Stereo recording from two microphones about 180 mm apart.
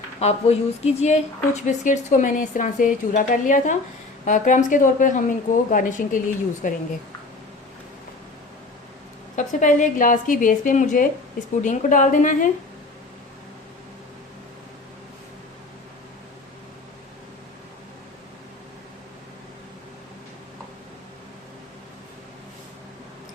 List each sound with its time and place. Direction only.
0.2 s a woman's voice: 35° left (ahead or behind)
9.3 s a woman's voice: 45° left (ahead or behind)